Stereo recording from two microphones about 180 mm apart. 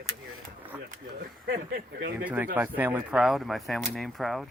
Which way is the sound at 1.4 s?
60° right (ahead or behind).